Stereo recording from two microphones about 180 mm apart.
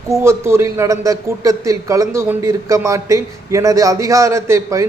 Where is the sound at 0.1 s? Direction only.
15° right (ahead or behind).